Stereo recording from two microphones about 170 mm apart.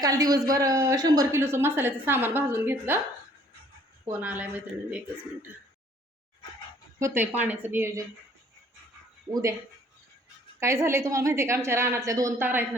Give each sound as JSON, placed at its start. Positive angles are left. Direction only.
{"t": 0.0, "sound": "a woman's voice", "side_deg": -20}
{"t": 4.0, "sound": "a woman's voice", "side_deg": -10}
{"t": 7.0, "sound": "a woman's voice", "side_deg": -10}
{"t": 9.3, "sound": "speech", "side_deg": -20}
{"t": 10.6, "sound": "a woman's voice", "side_deg": -15}